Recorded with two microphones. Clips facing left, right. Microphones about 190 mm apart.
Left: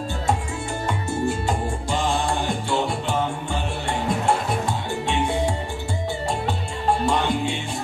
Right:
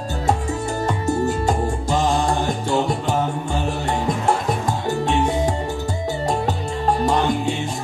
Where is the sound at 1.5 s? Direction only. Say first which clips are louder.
Right 4 dB; 40° right (ahead or behind).